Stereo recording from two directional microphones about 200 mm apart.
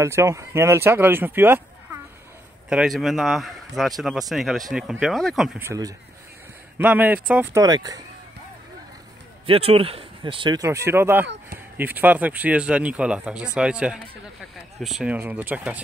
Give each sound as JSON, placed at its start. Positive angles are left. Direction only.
{"t": 0.0, "sound": "speech", "side_deg": -15}
{"t": 5.6, "sound": "speech", "side_deg": -15}
{"t": 7.6, "sound": "speech", "side_deg": -20}
{"t": 9.5, "sound": "speech", "side_deg": -30}